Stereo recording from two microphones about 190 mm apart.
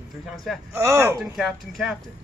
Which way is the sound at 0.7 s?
15° right (ahead or behind).